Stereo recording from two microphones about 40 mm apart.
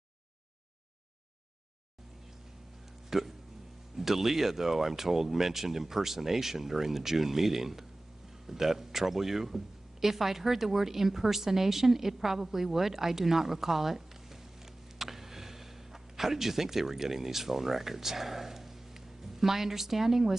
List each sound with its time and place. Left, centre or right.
3.1 s speech: centre